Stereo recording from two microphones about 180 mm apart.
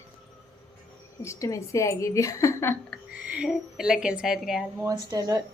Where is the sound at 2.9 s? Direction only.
5° right (ahead or behind).